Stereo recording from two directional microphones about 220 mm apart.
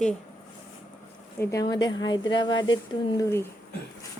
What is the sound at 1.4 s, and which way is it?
Speech, 15° left (ahead or behind).